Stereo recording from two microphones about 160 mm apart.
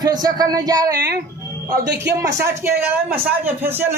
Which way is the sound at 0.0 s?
25° right (ahead or behind).